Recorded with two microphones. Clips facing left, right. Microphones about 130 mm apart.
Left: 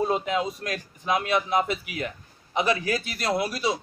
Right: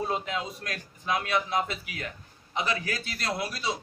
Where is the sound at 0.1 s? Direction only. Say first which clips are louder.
Left 6 dB; 20° left (ahead or behind).